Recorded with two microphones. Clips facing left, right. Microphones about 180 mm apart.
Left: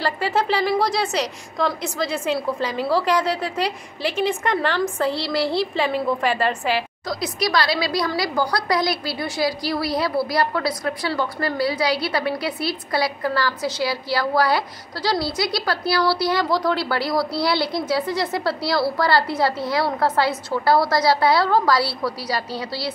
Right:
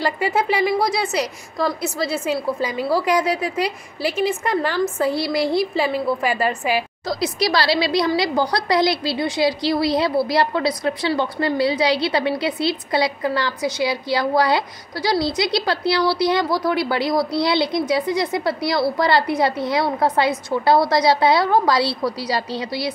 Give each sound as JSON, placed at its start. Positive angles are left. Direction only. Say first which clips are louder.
{"t": 0.0, "sound": "a woman's voice", "louder": "right 1 dB", "side_deg": -15}
{"t": 7.1, "sound": "a woman's voice", "louder": "right 3 dB", "side_deg": -30}